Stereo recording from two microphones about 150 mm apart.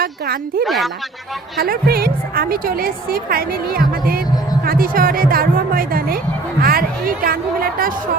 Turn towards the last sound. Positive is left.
turn(degrees=-70)  # may be behind; listen again after turning